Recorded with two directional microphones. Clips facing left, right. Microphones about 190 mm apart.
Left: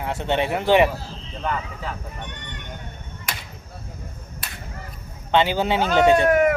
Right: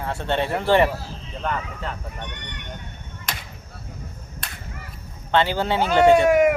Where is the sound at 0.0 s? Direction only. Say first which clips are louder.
Left 1 dB; 15° left (ahead or behind).